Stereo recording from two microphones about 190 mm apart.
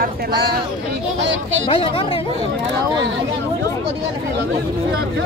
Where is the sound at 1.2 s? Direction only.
75° right (ahead or behind).